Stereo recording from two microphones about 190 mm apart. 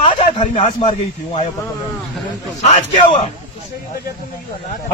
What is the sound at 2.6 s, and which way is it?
Speech, 35° left (ahead or behind).